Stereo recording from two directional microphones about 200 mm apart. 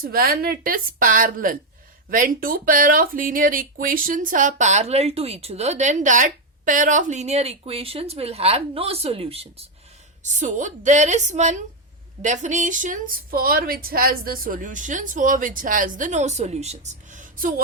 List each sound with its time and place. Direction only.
0.0 s a woman's voice: 50° right (ahead or behind)